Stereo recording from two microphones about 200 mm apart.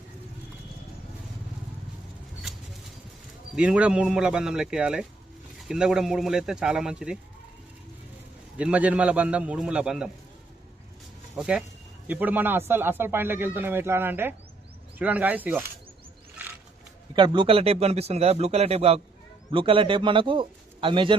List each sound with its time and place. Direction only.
3.5 s speech: 5° right (ahead or behind)
8.5 s speech: 5° right (ahead or behind)
11.3 s speech: 5° right (ahead or behind)
17.2 s speech: 25° right (ahead or behind)